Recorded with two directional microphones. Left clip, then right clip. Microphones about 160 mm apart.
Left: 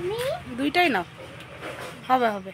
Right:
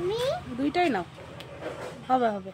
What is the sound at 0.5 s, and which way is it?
Speech, 5° left (ahead or behind).